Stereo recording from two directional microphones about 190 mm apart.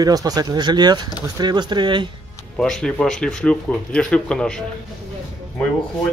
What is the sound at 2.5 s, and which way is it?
Speech, 5° left (ahead or behind).